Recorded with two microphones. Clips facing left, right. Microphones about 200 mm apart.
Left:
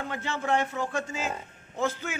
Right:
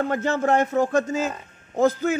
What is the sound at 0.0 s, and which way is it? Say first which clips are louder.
Speech: right 10 dB; 45° right (ahead or behind).